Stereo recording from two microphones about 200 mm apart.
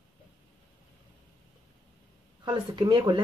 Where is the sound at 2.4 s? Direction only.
20° right (ahead or behind).